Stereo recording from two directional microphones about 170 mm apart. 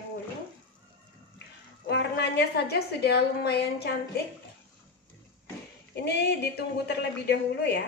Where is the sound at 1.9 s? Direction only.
85° left.